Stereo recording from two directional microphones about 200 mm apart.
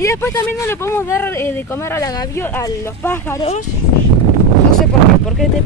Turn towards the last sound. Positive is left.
turn(degrees=0)  # may be behind; listen again after turning